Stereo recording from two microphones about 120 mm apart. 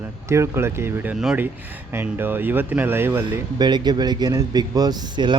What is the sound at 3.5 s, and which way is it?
Speech, 35° right (ahead or behind).